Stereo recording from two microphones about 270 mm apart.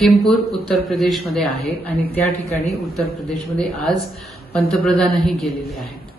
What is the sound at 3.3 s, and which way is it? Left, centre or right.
A woman's voice, centre.